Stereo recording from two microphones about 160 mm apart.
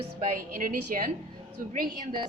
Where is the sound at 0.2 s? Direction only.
55° right (ahead or behind).